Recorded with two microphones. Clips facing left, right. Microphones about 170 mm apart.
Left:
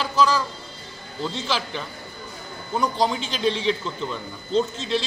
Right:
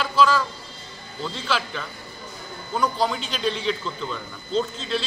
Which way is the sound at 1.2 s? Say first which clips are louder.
Left 1 dB; 20° left (ahead or behind).